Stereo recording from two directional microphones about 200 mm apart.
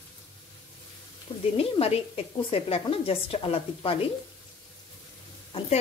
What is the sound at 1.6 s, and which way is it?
Speech, 30° left (ahead or behind).